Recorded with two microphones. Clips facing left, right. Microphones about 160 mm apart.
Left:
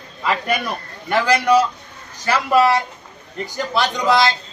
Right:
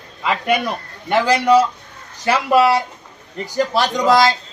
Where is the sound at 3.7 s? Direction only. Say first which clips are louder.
Right 1 dB; 40° right (ahead or behind).